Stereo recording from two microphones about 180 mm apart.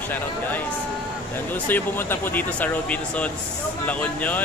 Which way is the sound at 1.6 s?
10° left (ahead or behind).